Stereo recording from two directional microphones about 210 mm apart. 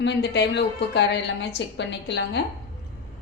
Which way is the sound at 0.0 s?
55° left (ahead or behind).